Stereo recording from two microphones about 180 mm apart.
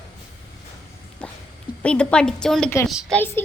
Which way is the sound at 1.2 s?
5° left (ahead or behind).